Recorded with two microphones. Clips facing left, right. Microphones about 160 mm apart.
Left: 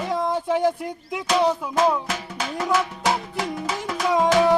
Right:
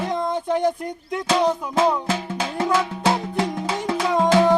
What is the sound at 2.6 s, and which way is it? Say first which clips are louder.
Music: right 2 dB; 25° right (ahead or behind).